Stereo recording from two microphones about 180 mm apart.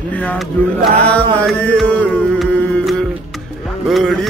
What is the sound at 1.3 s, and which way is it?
Mantra, 5° left (ahead or behind).